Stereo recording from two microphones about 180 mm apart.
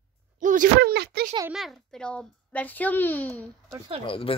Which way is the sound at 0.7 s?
65° right (ahead or behind).